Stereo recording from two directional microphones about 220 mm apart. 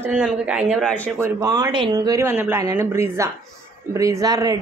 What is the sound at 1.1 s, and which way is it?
A woman's voice, 15° right (ahead or behind).